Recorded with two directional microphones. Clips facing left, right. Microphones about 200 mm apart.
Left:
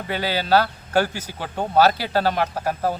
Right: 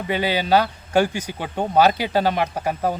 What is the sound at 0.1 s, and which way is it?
Speech, 15° right (ahead or behind).